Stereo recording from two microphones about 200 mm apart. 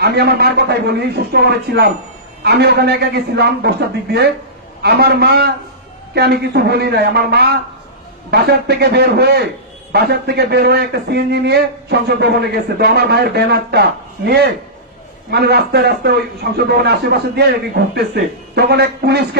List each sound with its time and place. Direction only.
0.0 s a man's voice: 55° right (ahead or behind)